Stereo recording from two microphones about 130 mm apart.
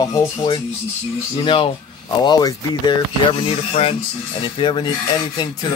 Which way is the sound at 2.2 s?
30° left (ahead or behind).